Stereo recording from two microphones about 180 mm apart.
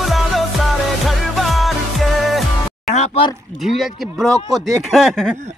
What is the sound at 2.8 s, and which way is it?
Music, 40° left (ahead or behind).